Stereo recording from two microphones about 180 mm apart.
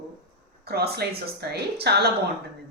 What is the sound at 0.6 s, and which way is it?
Speech, 60° right (ahead or behind).